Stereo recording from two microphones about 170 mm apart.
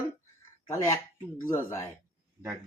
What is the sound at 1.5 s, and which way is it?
Speech, 15° left (ahead or behind).